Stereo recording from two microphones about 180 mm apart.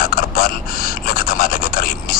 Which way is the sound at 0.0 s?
55° left (ahead or behind).